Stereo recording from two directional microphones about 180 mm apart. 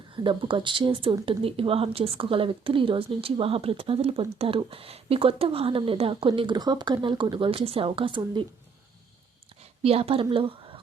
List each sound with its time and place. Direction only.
0.2 s speech: 25° right (ahead or behind)
9.8 s a woman's voice: 30° right (ahead or behind)